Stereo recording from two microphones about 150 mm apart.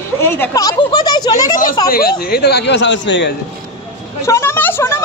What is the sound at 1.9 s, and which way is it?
Speech, 80° left.